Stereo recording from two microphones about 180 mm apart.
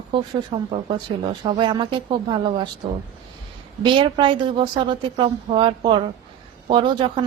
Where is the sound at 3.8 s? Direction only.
25° right (ahead or behind).